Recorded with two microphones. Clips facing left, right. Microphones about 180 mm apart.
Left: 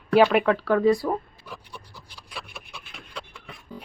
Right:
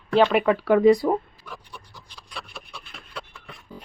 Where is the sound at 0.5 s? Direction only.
15° right (ahead or behind).